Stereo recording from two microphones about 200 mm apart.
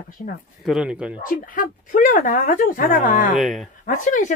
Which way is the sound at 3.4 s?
Centre (ahead or behind).